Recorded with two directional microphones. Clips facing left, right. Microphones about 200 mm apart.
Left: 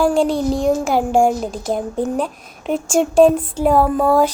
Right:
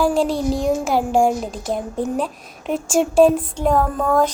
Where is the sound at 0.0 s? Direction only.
Centre (ahead or behind).